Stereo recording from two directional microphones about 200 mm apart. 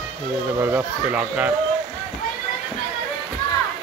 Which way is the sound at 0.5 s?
10° right (ahead or behind).